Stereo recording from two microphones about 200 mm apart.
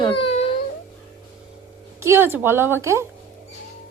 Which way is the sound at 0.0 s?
25° left (ahead or behind).